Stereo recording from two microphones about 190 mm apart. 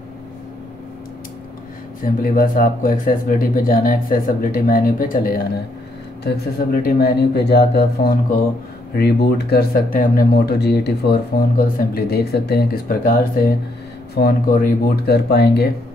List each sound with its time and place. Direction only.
2.0 s speech: 45° left (ahead or behind)